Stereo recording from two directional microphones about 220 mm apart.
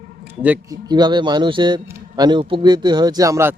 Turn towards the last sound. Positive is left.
turn(degrees=-15)  # may be behind; listen again after turning